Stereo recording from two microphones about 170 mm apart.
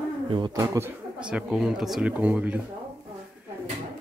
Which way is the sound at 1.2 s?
5° right (ahead or behind).